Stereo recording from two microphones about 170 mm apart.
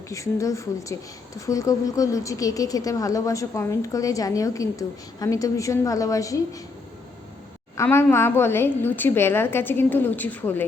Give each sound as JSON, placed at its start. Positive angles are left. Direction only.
{"t": 0.1, "sound": "a woman's voice", "side_deg": 20}
{"t": 7.8, "sound": "a woman's voice", "side_deg": 15}